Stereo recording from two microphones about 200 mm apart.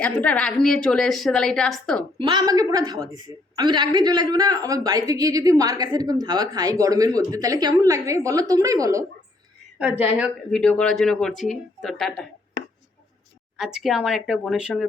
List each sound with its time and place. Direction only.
0.0 s a woman's voice: 5° left (ahead or behind)
2.1 s a woman's voice: 20° right (ahead or behind)
10.5 s a woman's voice: 5° left (ahead or behind)
13.6 s a woman's voice: centre (ahead or behind)